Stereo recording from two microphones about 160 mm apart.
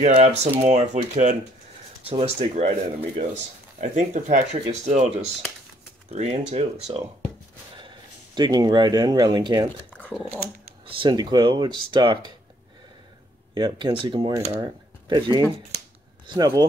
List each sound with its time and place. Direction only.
0.0 s speech: 45° right (ahead or behind)
3.8 s speech: 50° right (ahead or behind)
6.9 s speech: 30° right (ahead or behind)
8.4 s speech: 25° right (ahead or behind)
9.9 s dog: 10° left (ahead or behind)
10.9 s speech: 30° right (ahead or behind)
13.6 s speech: 30° right (ahead or behind)